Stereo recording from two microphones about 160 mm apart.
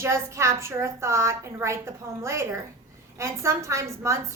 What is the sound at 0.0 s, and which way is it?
A woman's voice, 15° right (ahead or behind).